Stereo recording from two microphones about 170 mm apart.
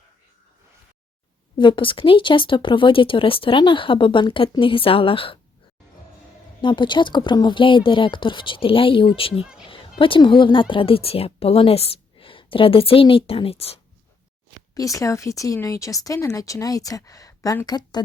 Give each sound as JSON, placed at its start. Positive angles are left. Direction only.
{"t": 1.5, "sound": "speech", "side_deg": 30}
{"t": 6.6, "sound": "speech", "side_deg": 30}
{"t": 14.8, "sound": "speech", "side_deg": 20}